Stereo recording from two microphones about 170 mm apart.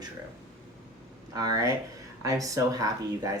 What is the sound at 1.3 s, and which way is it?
Speech, 20° right (ahead or behind).